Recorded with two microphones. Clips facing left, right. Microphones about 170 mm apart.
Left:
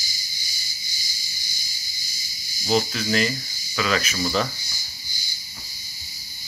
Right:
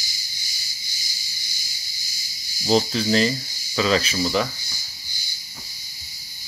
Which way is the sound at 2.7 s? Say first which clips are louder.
Right 3 dB; 30° right (ahead or behind).